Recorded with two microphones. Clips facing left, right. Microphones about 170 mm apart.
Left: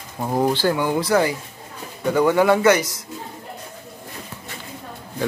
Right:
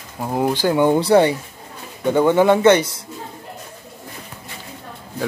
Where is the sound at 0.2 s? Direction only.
5° right (ahead or behind); by 3.0 s 30° right (ahead or behind).